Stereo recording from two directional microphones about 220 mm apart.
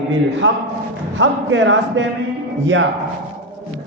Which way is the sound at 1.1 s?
55° right (ahead or behind).